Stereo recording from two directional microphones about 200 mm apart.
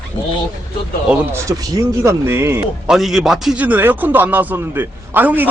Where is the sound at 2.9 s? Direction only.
Centre (ahead or behind).